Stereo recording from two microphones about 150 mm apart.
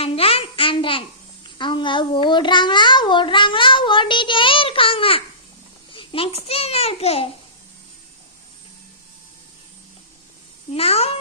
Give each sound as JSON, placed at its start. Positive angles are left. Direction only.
{"t": 0.0, "sound": "babbling", "side_deg": 40}
{"t": 1.5, "sound": "child singing", "side_deg": 30}
{"t": 5.9, "sound": "babbling", "side_deg": 35}
{"t": 10.8, "sound": "a child's voice", "side_deg": 40}